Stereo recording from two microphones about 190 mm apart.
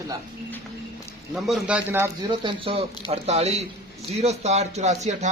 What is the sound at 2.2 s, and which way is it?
A man's voice, 25° right (ahead or behind).